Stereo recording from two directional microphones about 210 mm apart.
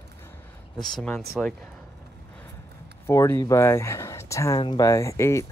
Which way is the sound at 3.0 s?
10° left (ahead or behind).